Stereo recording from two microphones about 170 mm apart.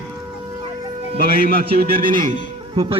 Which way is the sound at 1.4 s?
60° right (ahead or behind).